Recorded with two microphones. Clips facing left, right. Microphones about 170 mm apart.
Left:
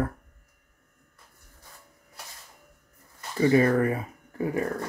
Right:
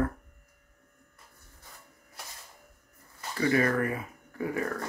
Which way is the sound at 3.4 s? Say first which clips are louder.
Left 5 dB; 25° left (ahead or behind).